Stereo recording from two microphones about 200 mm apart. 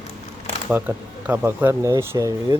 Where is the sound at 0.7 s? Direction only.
10° right (ahead or behind).